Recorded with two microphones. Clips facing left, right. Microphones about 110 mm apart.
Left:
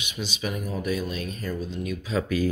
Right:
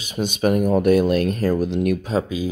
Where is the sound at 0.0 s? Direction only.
45° right (ahead or behind); by 2.1 s 65° right (ahead or behind).